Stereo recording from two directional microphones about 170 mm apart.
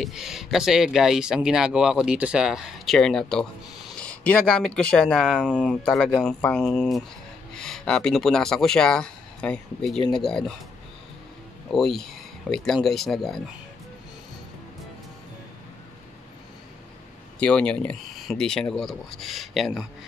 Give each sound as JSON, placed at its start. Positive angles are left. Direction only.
{"t": 0.0, "sound": "speech", "side_deg": 0}
{"t": 9.9, "sound": "speech", "side_deg": 30}
{"t": 10.2, "sound": "speech", "side_deg": 5}
{"t": 11.7, "sound": "speech", "side_deg": 0}
{"t": 17.4, "sound": "speech", "side_deg": 5}